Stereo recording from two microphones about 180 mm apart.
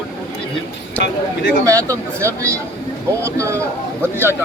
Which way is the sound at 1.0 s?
70° left (ahead or behind).